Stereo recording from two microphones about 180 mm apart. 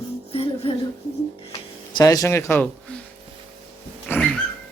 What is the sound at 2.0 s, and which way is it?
A man's voice, 20° left (ahead or behind).